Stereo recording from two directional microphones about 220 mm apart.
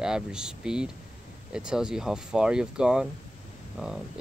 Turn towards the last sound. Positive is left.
turn(degrees=-5)  # may be behind; listen again after turning